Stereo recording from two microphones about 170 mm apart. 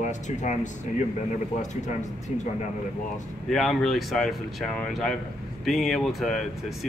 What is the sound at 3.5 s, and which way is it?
Speech, centre (ahead or behind).